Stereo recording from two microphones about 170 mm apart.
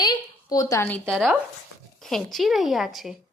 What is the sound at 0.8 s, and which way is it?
A woman's voice, 5° left (ahead or behind).